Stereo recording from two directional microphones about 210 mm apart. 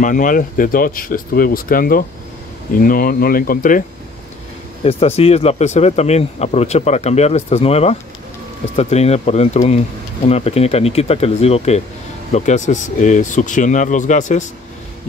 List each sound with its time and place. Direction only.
0.0 s speech: 40° left (ahead or behind)
4.8 s speech: 30° left (ahead or behind)